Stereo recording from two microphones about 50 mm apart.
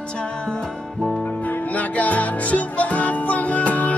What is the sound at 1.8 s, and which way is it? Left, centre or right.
Music, left.